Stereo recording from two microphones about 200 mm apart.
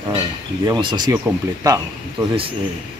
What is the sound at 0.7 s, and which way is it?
Speech, 20° right (ahead or behind).